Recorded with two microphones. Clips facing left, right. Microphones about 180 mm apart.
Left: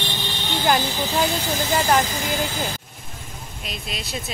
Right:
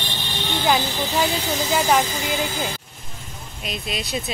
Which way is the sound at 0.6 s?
Centre (ahead or behind).